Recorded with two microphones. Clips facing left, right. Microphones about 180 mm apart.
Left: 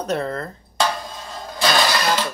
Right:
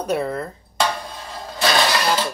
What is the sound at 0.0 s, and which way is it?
Speech, 10° right (ahead or behind).